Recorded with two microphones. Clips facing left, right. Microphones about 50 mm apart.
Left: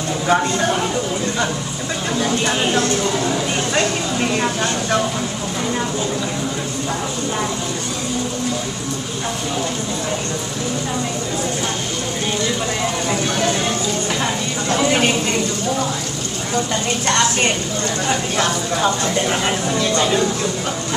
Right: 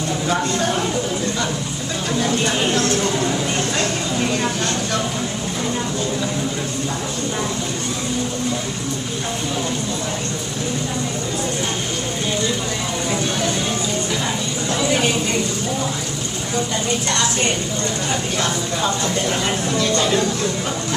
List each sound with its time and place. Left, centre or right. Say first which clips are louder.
0.3 s speech: left 4 dB; centre
2.1 s speech: even; centre
18.4 s speech: left 4 dB; left